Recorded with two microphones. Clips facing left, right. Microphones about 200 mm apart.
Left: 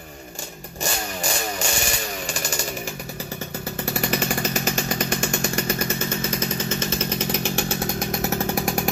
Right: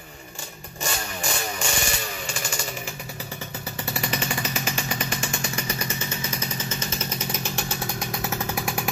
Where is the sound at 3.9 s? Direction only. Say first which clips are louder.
Left 4 dB; 50° left (ahead or behind).